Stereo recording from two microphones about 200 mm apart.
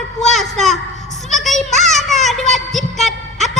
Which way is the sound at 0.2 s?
Centre (ahead or behind).